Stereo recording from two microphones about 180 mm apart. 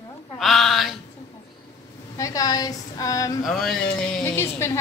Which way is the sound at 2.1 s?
20° left (ahead or behind).